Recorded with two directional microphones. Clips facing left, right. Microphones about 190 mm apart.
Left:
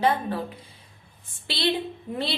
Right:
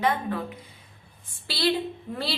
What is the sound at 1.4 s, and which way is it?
Speech, 20° left (ahead or behind).